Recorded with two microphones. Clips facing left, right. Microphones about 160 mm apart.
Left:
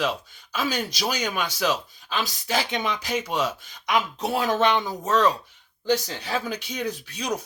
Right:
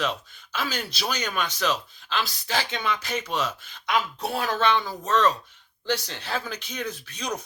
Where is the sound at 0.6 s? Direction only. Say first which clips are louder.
Left 4 dB; 15° left (ahead or behind).